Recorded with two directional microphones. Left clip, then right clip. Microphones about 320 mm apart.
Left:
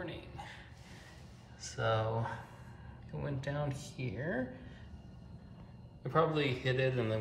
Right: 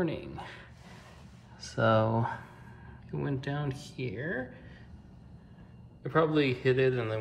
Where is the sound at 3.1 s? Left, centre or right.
Centre.